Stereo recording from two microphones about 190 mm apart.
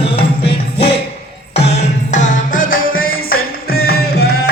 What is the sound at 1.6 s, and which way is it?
Music, 35° left (ahead or behind).